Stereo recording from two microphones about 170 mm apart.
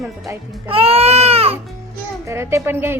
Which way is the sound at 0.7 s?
35° right (ahead or behind).